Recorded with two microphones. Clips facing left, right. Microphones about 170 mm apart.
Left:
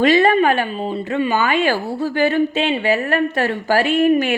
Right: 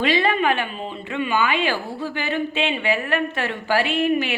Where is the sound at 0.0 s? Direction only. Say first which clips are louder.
Left 6 dB; 45° left (ahead or behind).